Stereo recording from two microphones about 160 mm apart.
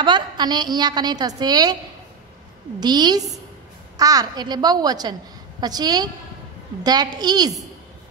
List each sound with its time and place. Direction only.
0.0 s a woman's voice: 25° right (ahead or behind)
2.8 s a woman's voice: 25° right (ahead or behind)